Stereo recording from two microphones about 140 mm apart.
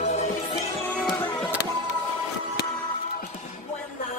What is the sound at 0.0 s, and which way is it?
Music, 55° left (ahead or behind).